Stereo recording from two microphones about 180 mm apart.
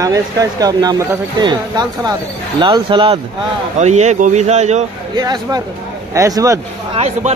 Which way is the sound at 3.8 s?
40° right (ahead or behind).